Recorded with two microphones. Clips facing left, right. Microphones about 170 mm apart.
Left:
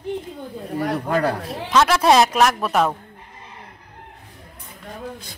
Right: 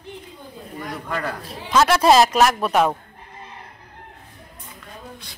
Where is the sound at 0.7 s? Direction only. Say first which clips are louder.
Left 9 dB; 70° left (ahead or behind).